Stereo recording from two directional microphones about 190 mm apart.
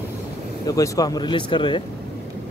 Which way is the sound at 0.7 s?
15° left (ahead or behind).